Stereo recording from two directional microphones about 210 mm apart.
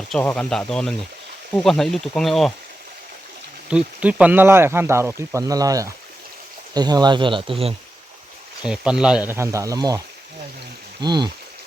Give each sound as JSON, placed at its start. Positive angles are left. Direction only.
{"t": 0.1, "sound": "speech", "side_deg": 5}
{"t": 3.7, "sound": "speech", "side_deg": -5}
{"t": 8.6, "sound": "speech", "side_deg": -5}
{"t": 11.0, "sound": "speech", "side_deg": -20}